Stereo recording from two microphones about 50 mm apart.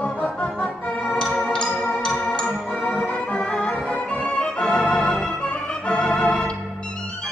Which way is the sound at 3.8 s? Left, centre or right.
Left.